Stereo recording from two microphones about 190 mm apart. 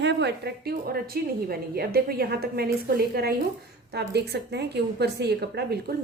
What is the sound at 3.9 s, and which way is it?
A woman's voice, 60° right (ahead or behind).